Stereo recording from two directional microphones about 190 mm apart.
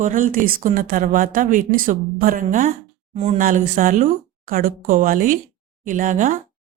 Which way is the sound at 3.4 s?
45° right (ahead or behind).